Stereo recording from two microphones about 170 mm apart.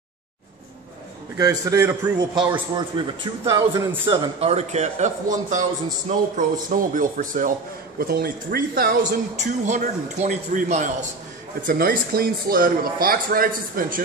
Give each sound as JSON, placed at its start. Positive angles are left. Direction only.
{"t": 1.3, "sound": "a man's voice", "side_deg": -20}
{"t": 2.3, "sound": "a man's voice", "side_deg": -25}
{"t": 8.0, "sound": "speech", "side_deg": -65}
{"t": 9.4, "sound": "a man's voice", "side_deg": -45}
{"t": 11.6, "sound": "speech", "side_deg": -55}